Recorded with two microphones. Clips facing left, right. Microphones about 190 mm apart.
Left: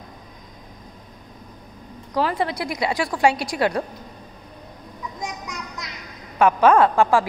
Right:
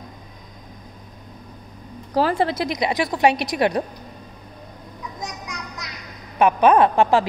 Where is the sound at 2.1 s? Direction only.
30° right (ahead or behind).